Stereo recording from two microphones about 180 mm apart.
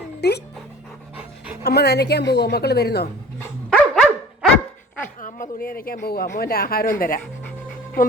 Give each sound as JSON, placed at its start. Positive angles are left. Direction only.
{"t": 0.2, "sound": "pant", "side_deg": 65}
{"t": 1.6, "sound": "a woman's voice", "side_deg": 65}
{"t": 3.7, "sound": "dog", "side_deg": 0}
{"t": 5.2, "sound": "speech", "side_deg": 50}